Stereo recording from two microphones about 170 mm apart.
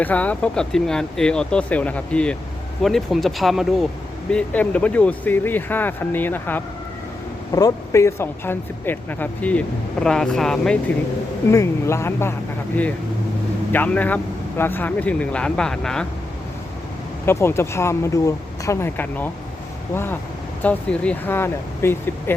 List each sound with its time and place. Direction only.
0.0 s speech: 10° left (ahead or behind)
11.5 s speech: 15° left (ahead or behind)
13.7 s speech: 10° left (ahead or behind)
17.2 s speech: 15° left (ahead or behind)